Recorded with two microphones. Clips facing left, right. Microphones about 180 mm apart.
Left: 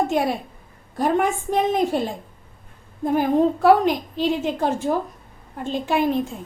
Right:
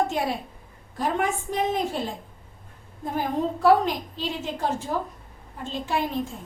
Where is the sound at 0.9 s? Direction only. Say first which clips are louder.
Left 5 dB; 60° left (ahead or behind).